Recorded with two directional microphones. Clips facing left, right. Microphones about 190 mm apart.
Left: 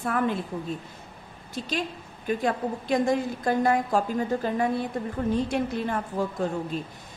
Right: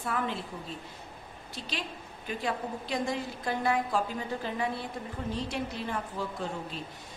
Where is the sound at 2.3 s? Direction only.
50° left (ahead or behind).